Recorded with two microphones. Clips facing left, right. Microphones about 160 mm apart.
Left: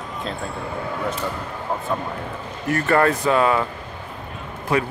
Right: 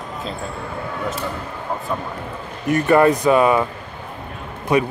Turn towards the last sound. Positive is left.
turn(degrees=-20)  # may be behind; listen again after turning